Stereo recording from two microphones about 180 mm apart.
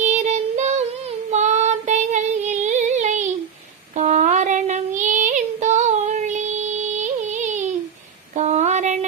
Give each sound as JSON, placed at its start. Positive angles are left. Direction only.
{"t": 0.0, "sound": "child singing", "side_deg": -40}
{"t": 1.3, "sound": "female singing", "side_deg": -40}
{"t": 3.9, "sound": "child singing", "side_deg": -40}
{"t": 8.4, "sound": "female singing", "side_deg": -40}